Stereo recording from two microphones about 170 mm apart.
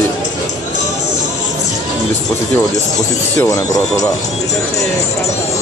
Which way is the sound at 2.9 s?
10° left (ahead or behind).